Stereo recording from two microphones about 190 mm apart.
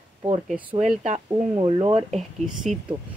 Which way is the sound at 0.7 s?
35° right (ahead or behind).